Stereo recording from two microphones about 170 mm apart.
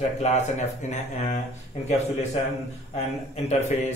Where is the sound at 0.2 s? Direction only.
40° left (ahead or behind).